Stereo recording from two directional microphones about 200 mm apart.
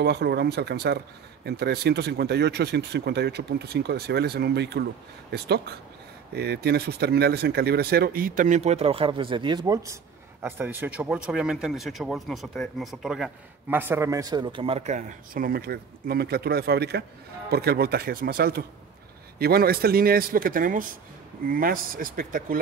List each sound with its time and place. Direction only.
0.0 s speech: 55° right (ahead or behind)